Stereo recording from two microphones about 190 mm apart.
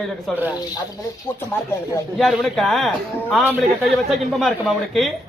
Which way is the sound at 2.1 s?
Centre (ahead or behind).